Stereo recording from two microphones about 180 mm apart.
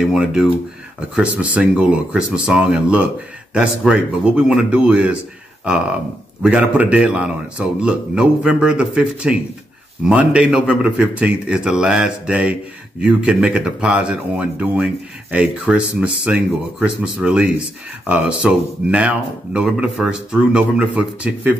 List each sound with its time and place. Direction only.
0.0 s a man's voice: 5° right (ahead or behind)
6.4 s a man's voice: 5° right (ahead or behind)